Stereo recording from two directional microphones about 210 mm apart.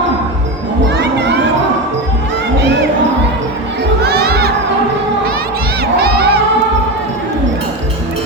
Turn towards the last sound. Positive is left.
turn(degrees=-50)  # may be behind; listen again after turning